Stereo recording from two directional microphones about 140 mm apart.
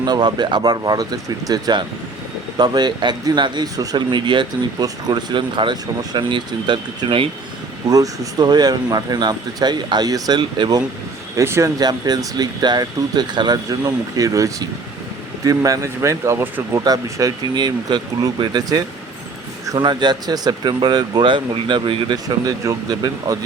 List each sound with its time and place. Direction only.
0.0 s speech: 30° right (ahead or behind)
7.9 s speech: 25° right (ahead or behind)